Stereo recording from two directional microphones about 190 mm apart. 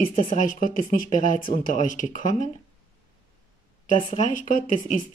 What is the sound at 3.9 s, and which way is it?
Speech, 40° left (ahead or behind).